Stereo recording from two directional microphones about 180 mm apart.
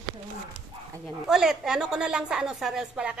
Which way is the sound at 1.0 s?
Centre (ahead or behind).